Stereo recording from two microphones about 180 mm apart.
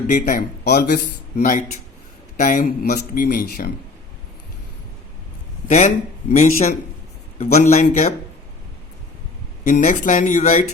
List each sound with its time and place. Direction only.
0.1 s speech: 45° left (ahead or behind)
0.6 s speech: 55° left (ahead or behind)
5.6 s speech: 40° left (ahead or behind)
9.6 s speech: 45° left (ahead or behind)